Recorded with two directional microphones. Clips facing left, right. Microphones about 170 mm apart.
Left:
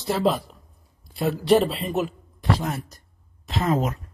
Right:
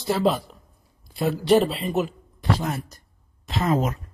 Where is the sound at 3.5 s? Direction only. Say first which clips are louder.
Even; 40° right (ahead or behind).